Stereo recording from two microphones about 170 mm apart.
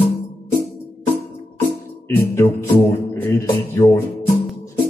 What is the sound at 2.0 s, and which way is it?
Speech, 15° left (ahead or behind).